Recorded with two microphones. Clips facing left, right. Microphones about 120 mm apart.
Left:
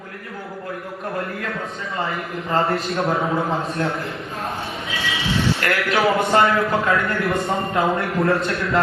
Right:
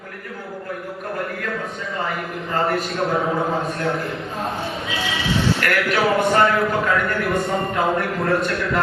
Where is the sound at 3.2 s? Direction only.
Centre (ahead or behind).